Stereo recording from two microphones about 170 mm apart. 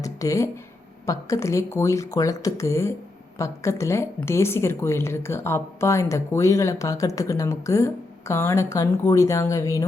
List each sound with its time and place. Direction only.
0.0 s a woman's voice: 20° left (ahead or behind)